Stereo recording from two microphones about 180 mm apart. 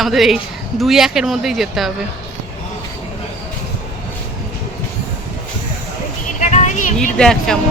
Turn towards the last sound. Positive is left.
turn(degrees=5)  # may be behind; listen again after turning